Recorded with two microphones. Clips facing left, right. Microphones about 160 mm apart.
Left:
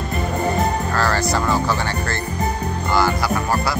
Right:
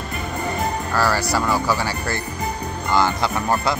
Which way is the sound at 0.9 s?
10° right (ahead or behind).